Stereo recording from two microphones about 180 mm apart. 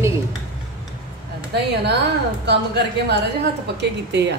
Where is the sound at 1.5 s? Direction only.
65° right (ahead or behind).